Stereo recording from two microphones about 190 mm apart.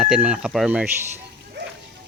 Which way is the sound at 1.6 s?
65° right (ahead or behind).